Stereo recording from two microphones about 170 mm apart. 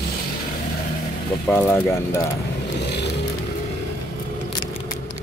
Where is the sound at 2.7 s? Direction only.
80° left.